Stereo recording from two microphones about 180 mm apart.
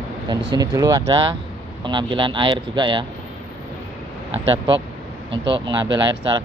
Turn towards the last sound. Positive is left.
turn(degrees=-25)  # may be behind; listen again after turning